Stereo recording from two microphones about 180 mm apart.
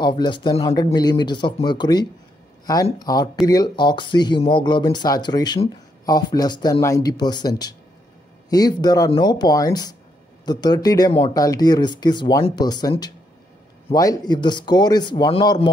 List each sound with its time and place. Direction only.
0.0 s speech: 25° left (ahead or behind)